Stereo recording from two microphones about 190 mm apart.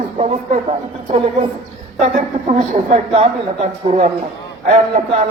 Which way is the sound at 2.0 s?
35° right (ahead or behind).